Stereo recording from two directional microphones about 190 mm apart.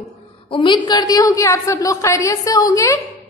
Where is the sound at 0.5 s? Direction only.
25° left (ahead or behind).